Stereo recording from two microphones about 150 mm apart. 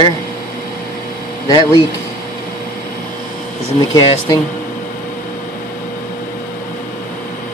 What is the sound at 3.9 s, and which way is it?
Speech, 30° left (ahead or behind).